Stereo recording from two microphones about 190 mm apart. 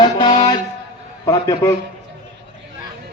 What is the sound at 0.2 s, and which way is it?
Music, 25° left (ahead or behind).